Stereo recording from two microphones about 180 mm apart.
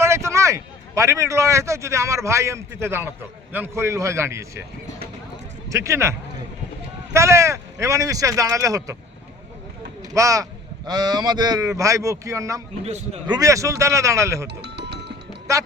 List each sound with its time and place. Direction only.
0.0 s a man's voice: 15° right (ahead or behind)
5.6 s speech: 15° right (ahead or behind)
10.0 s speech: 20° right (ahead or behind)
12.8 s a man's voice: 40° right (ahead or behind)
13.2 s speech: 20° right (ahead or behind)
14.4 s music: 70° right (ahead or behind)